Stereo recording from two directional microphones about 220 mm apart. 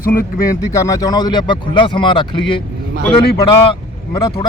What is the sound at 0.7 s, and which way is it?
A man's voice, 15° left (ahead or behind).